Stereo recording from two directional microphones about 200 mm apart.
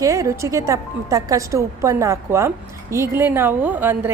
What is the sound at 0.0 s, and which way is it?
A woman's voice, 15° right (ahead or behind).